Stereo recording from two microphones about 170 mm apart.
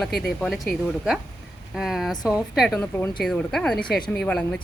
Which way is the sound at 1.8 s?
Centre (ahead or behind).